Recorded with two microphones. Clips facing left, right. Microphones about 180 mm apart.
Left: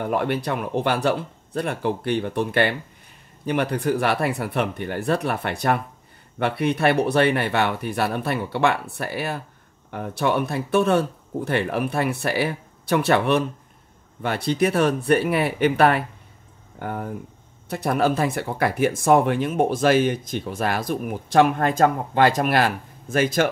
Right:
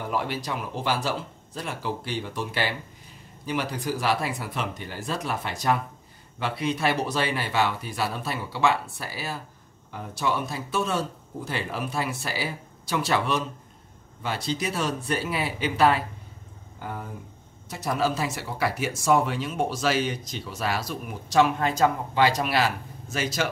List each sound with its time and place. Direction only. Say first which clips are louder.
0.0 s speech: left 6 dB; 55° left (ahead or behind)